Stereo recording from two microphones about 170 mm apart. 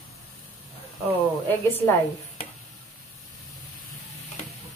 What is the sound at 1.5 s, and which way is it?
Speech, 10° left (ahead or behind).